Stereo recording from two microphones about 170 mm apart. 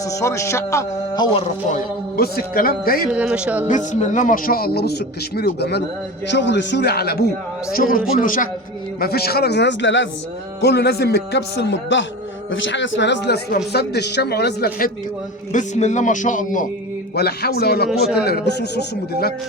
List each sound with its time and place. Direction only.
0.0 s a man's voice: 20° left (ahead or behind)
1.7 s speech: 60° left (ahead or behind)
3.1 s speech: 5° right (ahead or behind)
3.7 s speech: 45° left (ahead or behind); by 5.8 s 75° left (ahead or behind)
6.3 s speech: 90° left; by 7.3 s 65° left (ahead or behind)
7.8 s speech: 55° left (ahead or behind)
9.0 s speech: 65° left (ahead or behind); by 10.1 s 90° left
10.6 s a man's voice: 70° left (ahead or behind)
13.7 s speech: 75° left (ahead or behind)
15.5 s speech: 45° left (ahead or behind)
17.2 s speech: 70° left (ahead or behind)